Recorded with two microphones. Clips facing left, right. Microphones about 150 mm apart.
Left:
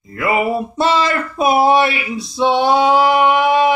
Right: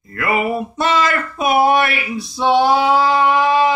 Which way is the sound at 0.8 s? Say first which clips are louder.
Left 1 dB; 30° left (ahead or behind).